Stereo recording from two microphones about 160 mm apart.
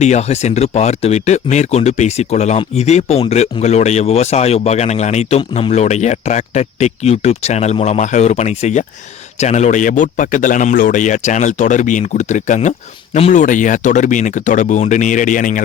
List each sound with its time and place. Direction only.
0.0 s speech: 45° left (ahead or behind)